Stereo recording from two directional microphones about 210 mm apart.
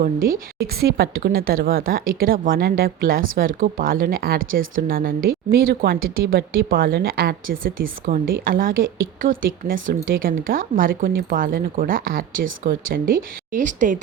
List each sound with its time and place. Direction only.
0.0 s a woman's voice: 45° right (ahead or behind)